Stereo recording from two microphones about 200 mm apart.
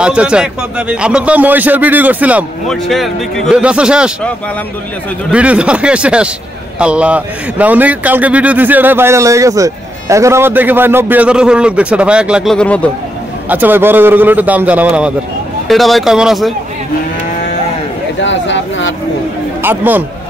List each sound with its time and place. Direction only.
0.0 s a man's voice: 5° right (ahead or behind)
5.3 s a man's voice: 5° right (ahead or behind)
13.5 s a man's voice: 10° right (ahead or behind)
18.2 s a sound: 65° left (ahead or behind)
19.6 s a man's voice: 10° right (ahead or behind)